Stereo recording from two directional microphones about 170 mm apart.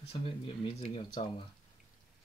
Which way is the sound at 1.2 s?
30° left (ahead or behind).